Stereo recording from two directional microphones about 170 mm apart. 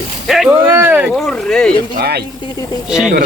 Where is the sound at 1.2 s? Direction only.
5° left (ahead or behind).